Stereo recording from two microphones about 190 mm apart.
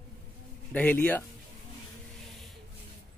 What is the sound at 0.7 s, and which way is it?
Speech, 10° left (ahead or behind).